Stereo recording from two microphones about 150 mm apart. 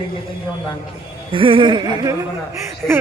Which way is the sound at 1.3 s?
35° right (ahead or behind).